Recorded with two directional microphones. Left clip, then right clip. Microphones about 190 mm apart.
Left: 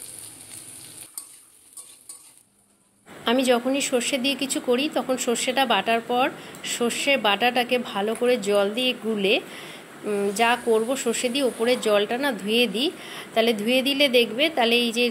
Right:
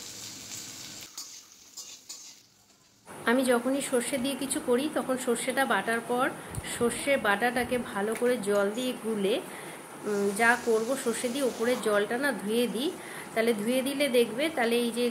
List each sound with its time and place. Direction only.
3.3 s speech: 15° left (ahead or behind)